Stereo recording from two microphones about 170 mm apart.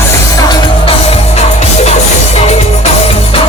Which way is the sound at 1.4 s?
40° left (ahead or behind).